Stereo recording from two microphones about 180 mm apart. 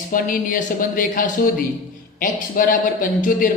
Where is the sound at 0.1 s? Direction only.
50° left (ahead or behind).